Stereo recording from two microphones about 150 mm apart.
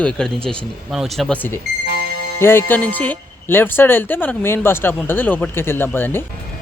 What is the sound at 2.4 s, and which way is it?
Speech, 15° left (ahead or behind).